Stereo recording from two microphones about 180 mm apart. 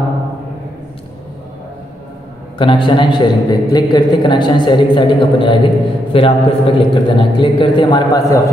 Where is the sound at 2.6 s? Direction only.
25° left (ahead or behind).